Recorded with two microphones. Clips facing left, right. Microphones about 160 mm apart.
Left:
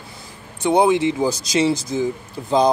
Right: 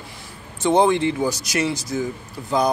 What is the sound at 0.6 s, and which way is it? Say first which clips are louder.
Speech: left 1 dB; 15° left (ahead or behind).